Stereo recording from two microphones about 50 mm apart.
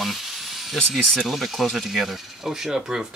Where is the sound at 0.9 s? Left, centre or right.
Centre.